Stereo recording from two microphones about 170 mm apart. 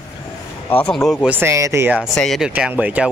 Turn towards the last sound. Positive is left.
turn(degrees=-10)  # may be behind; listen again after turning